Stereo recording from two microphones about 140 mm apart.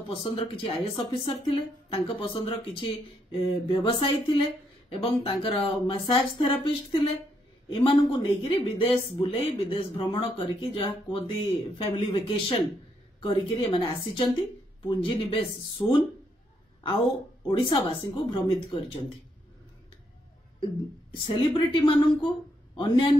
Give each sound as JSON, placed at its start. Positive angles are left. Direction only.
{"t": 0.1, "sound": "a woman's voice", "side_deg": 40}
{"t": 15.8, "sound": "speech", "side_deg": 25}
{"t": 17.5, "sound": "a woman's voice", "side_deg": 35}
{"t": 21.3, "sound": "a woman's voice", "side_deg": 35}